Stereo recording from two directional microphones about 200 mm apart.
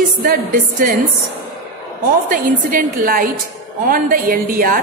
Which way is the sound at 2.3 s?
45° right (ahead or behind).